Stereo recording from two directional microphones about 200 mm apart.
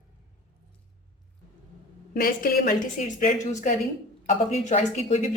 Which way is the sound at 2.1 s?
50° left (ahead or behind).